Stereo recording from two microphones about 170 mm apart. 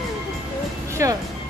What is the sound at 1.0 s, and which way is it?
Speech, 15° right (ahead or behind).